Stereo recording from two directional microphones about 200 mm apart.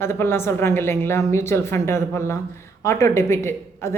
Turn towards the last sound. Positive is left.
turn(degrees=15)  # may be behind; listen again after turning